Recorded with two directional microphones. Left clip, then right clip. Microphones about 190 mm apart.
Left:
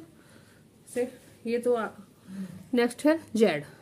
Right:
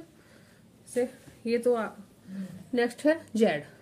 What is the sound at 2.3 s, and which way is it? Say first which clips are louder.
Speech: left 2 dB; 20° left (ahead or behind).